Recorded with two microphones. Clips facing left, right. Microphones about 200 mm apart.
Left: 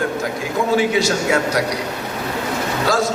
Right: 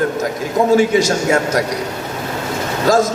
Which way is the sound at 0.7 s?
45° right (ahead or behind).